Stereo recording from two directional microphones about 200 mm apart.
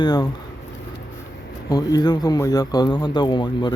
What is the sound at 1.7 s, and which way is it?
Speech, 20° left (ahead or behind).